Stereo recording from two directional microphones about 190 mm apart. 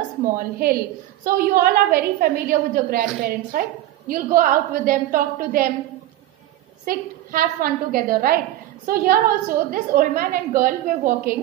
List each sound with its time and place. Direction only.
0.2 s a woman's voice: 50° right (ahead or behind)
6.9 s a woman's voice: 50° right (ahead or behind)